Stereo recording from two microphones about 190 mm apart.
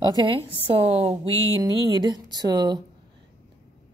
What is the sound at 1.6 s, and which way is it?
A woman's voice, 20° right (ahead or behind).